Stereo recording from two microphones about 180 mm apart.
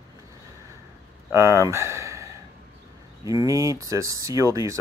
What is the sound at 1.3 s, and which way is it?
Speech, 15° right (ahead or behind).